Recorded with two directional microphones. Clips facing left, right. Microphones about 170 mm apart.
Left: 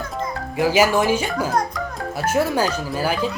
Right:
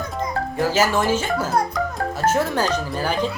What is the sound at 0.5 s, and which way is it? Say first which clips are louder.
Speech: left 3 dB; 10° left (ahead or behind).